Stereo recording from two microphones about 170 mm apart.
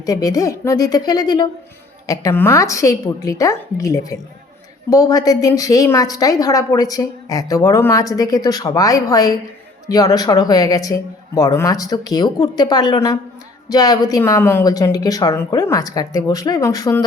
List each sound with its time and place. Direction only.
0.0 s a woman's voice: 20° left (ahead or behind)